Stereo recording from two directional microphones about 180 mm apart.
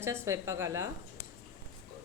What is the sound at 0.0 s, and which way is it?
Speech, 15° right (ahead or behind).